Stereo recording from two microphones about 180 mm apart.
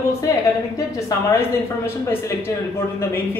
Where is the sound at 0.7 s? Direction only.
20° left (ahead or behind).